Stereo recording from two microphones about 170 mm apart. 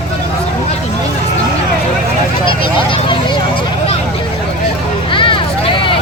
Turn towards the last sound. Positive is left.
turn(degrees=30)  # may be behind; listen again after turning